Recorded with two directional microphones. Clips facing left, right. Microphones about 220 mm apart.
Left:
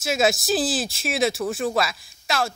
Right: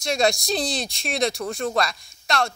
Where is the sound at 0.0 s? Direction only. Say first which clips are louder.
Even; 5° left (ahead or behind).